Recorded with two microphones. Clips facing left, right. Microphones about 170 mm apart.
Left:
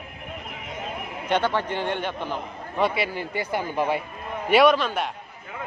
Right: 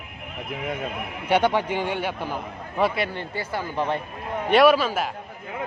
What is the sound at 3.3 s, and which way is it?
Speech, 15° left (ahead or behind).